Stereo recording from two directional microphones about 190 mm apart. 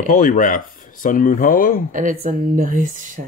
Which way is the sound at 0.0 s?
40° left (ahead or behind).